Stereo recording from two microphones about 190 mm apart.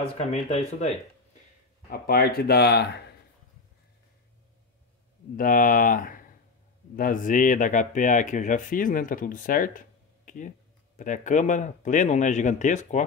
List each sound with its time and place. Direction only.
0.0 s speech: 35° left (ahead or behind)
1.9 s speech: 55° left (ahead or behind)
5.3 s speech: 45° left (ahead or behind)